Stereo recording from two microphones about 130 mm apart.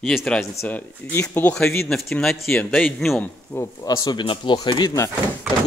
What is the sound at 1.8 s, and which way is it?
Speech, 5° left (ahead or behind).